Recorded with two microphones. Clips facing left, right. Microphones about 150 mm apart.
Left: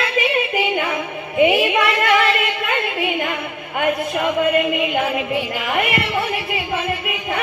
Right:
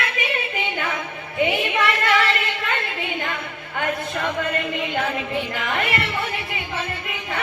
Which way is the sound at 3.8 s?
15° left (ahead or behind).